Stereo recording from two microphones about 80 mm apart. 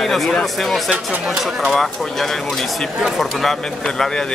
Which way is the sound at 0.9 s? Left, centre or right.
Centre.